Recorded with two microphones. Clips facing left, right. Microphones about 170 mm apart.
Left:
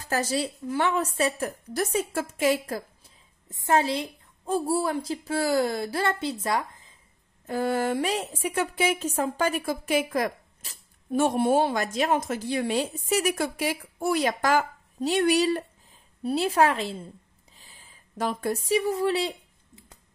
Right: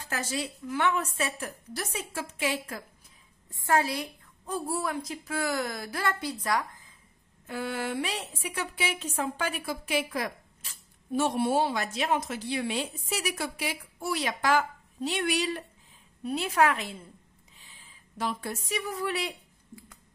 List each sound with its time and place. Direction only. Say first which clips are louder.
0.0 s a woman's voice: left 6 dB; 40° left (ahead or behind)
3.4 s a woman's voice: left 3 dB; 20° left (ahead or behind)
7.4 s a woman's voice: left 7 dB; 40° left (ahead or behind)
18.1 s a woman's voice: left 5 dB; 45° left (ahead or behind)
18.7 s a woman's voice: left 8 dB; 25° left (ahead or behind)